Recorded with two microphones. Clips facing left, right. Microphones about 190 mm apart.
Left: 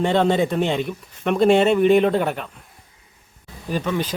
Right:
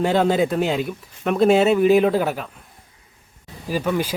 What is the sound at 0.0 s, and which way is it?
Speech, 5° right (ahead or behind).